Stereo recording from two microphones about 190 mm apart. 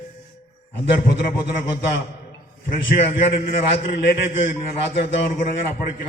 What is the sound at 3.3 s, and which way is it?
Speech, 55° left (ahead or behind).